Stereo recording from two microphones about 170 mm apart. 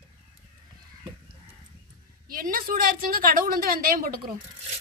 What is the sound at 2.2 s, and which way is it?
A woman's voice, 55° right (ahead or behind).